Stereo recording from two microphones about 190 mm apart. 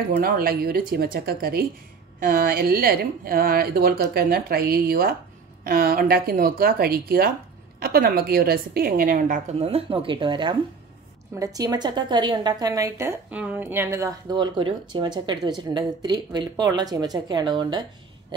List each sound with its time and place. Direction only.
0.1 s a woman's voice: 50° right (ahead or behind)
9.6 s a woman's voice: 30° right (ahead or behind)